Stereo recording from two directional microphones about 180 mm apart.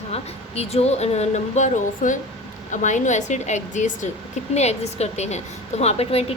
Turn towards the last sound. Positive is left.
turn(degrees=35)  # may be behind; listen again after turning